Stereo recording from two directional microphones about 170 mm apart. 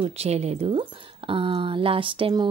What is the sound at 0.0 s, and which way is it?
Speech, 40° right (ahead or behind).